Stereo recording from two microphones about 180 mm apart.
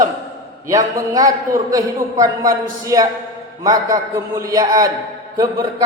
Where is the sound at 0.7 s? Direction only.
20° right (ahead or behind).